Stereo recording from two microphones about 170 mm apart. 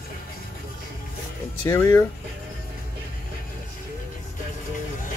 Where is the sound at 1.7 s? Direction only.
15° left (ahead or behind).